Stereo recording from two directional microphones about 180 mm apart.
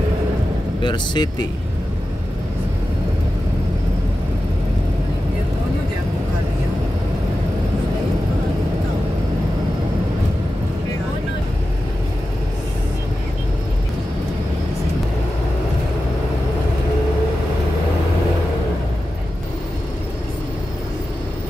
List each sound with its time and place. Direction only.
0.8 s speech: 25° left (ahead or behind)